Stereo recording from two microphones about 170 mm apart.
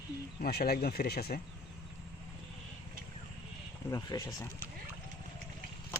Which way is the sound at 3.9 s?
20° left (ahead or behind).